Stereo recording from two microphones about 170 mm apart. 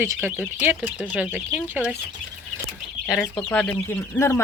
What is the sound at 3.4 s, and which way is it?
Speech, 5° left (ahead or behind).